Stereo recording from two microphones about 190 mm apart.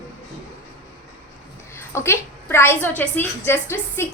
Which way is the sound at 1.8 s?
15° left (ahead or behind).